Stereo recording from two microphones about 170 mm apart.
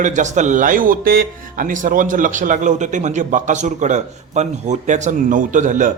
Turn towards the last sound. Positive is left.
turn(degrees=-50)  # may be behind; listen again after turning